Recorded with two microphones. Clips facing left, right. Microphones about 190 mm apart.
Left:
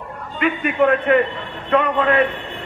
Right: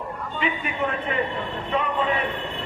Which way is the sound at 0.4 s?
60° left (ahead or behind).